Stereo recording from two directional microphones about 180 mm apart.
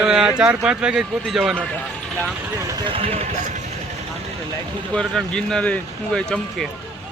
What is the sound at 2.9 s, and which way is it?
Speech, 35° right (ahead or behind).